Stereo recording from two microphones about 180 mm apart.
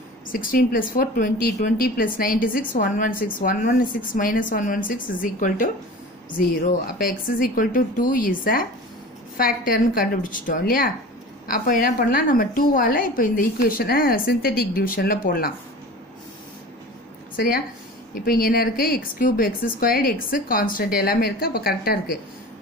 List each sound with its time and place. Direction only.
0.3 s a woman's voice: 50° left (ahead or behind)
18.1 s a woman's voice: 55° left (ahead or behind)